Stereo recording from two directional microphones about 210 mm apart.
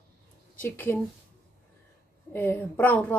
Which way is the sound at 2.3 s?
10° left (ahead or behind).